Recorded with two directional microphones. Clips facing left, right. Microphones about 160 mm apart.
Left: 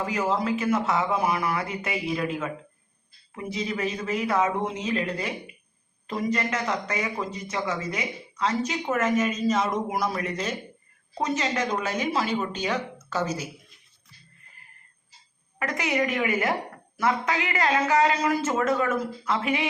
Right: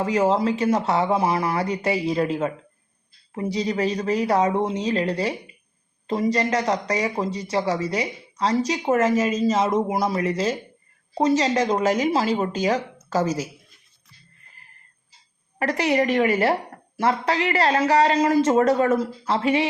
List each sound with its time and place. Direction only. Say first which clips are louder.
0.0 s speech: right 6 dB; 35° right (ahead or behind)
13.2 s a woman's voice: right 5 dB; 90° right
15.5 s speech: right 6 dB; 35° right (ahead or behind)